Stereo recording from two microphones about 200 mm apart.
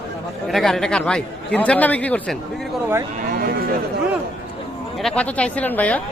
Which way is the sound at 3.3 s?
50° right (ahead or behind).